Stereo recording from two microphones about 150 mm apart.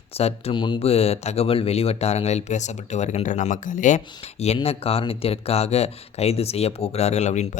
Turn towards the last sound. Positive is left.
turn(degrees=50)  # may be behind; listen again after turning